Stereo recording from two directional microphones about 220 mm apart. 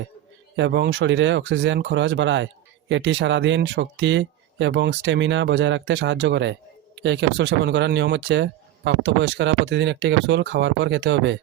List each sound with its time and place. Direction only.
0.5 s speech: 55° right (ahead or behind)